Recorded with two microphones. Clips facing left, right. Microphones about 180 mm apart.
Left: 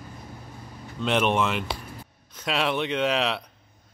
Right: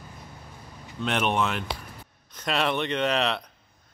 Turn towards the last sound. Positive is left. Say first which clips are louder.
# left 1 dB
turn(degrees=5)  # may be behind; listen again after turning